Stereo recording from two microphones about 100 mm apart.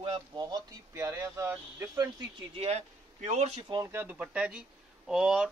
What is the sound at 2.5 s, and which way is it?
Speech, 90° right.